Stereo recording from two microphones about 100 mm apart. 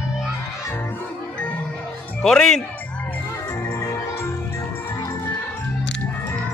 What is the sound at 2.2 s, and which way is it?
Speech, 5° left (ahead or behind).